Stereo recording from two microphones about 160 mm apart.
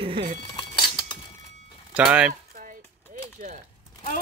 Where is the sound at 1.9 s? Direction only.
5° right (ahead or behind).